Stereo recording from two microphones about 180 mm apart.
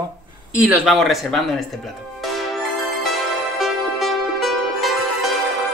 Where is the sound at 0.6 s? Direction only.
Centre (ahead or behind).